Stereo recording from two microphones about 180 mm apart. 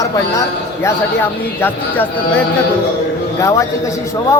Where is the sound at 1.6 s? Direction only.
10° left (ahead or behind).